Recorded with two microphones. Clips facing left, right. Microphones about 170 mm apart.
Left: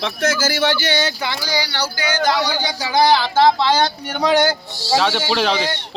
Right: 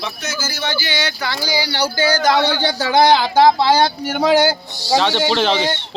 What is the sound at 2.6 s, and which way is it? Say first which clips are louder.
Speech: right 3 dB; 55° right (ahead or behind).